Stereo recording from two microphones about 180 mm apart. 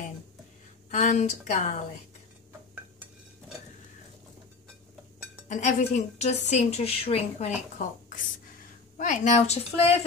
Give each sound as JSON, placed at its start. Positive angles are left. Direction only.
{"t": 0.8, "sound": "a woman's voice", "side_deg": 40}
{"t": 5.5, "sound": "a woman's voice", "side_deg": 40}